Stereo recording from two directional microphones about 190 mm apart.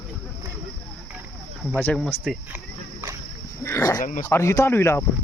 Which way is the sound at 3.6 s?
15° left (ahead or behind).